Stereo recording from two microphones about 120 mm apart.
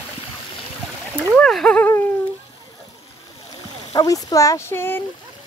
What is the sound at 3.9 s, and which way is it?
Speech, 30° left (ahead or behind).